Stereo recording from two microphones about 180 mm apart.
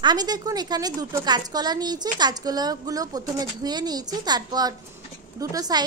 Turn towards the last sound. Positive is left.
turn(degrees=-20)  # may be behind; listen again after turning